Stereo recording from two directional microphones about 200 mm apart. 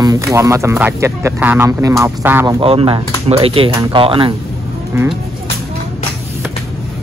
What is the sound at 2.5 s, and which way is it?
Speech, 25° right (ahead or behind).